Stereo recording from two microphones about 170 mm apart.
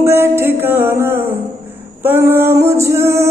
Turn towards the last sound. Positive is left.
turn(degrees=-15)  # may be behind; listen again after turning